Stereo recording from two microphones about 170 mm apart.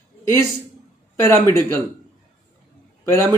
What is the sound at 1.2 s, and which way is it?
Speech, 20° left (ahead or behind).